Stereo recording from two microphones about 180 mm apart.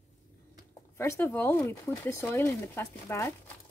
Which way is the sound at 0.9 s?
15° left (ahead or behind).